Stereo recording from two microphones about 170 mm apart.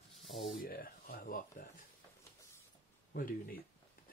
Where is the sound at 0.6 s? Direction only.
60° left (ahead or behind).